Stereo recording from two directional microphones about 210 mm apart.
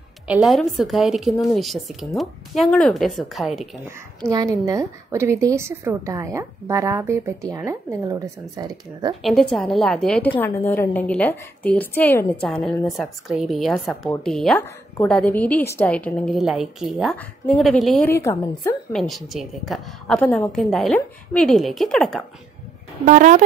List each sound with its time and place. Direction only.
0.3 s a woman's voice: centre (ahead or behind)
4.3 s a woman's voice: 15° right (ahead or behind)
9.2 s a woman's voice: centre (ahead or behind)
18.9 s a woman's voice: centre (ahead or behind)
23.0 s speech: 35° right (ahead or behind)